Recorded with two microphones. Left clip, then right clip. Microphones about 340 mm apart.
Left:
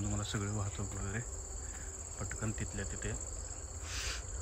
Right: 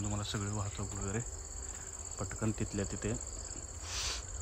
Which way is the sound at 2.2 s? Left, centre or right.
Centre.